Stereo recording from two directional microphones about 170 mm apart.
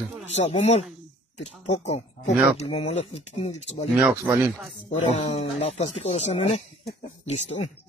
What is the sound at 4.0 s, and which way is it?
Speech, 10° right (ahead or behind).